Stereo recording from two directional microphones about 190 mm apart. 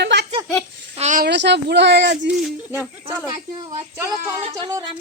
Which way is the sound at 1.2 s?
65° right (ahead or behind).